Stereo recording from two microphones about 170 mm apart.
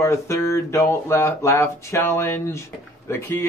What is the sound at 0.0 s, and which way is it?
Speech, 15° left (ahead or behind).